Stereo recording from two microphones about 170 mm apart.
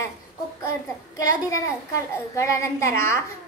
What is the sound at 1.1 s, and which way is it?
A child's voice, 20° left (ahead or behind).